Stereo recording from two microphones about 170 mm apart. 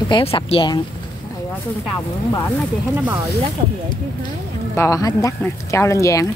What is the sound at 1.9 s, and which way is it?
Speech, 20° left (ahead or behind).